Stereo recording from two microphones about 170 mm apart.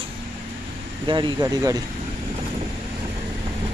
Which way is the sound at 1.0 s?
25° right (ahead or behind).